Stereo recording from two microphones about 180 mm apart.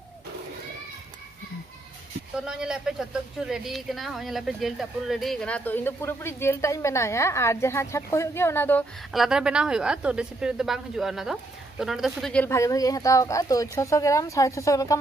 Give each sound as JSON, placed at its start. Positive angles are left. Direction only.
{"t": 2.4, "sound": "speech", "side_deg": -5}
{"t": 9.1, "sound": "a woman's voice", "side_deg": 0}
{"t": 12.5, "sound": "speech", "side_deg": 20}